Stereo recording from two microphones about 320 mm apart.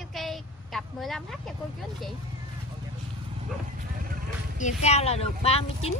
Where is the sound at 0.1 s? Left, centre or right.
Centre.